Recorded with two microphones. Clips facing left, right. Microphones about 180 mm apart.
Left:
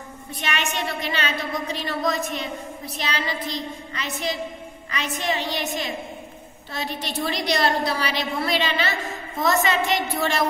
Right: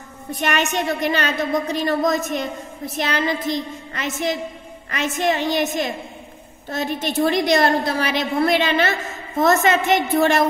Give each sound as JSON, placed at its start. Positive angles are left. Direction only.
{"t": 0.3, "sound": "a woman's voice", "side_deg": -45}
{"t": 4.9, "sound": "a woman's voice", "side_deg": -50}